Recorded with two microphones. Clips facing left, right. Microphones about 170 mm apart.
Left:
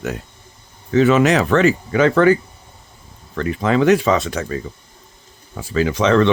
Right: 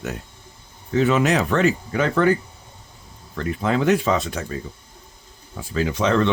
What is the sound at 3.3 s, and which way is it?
Speech, 85° left.